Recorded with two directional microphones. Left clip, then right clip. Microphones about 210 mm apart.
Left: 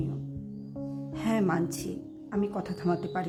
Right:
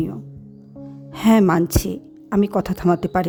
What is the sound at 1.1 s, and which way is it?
Speech, 50° right (ahead or behind).